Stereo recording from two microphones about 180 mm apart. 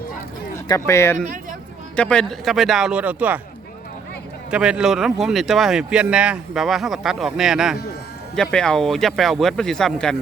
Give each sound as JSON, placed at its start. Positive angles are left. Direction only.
{"t": 0.7, "sound": "speech", "side_deg": 15}
{"t": 4.5, "sound": "speech", "side_deg": -5}